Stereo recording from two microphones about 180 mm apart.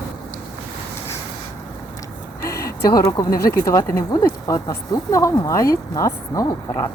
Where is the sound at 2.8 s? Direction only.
20° left (ahead or behind).